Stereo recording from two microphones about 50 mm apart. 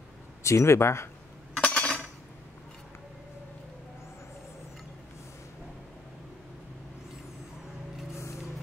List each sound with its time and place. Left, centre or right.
0.4 s speech: left
1.6 s cutlery: left
8.2 s a sound: left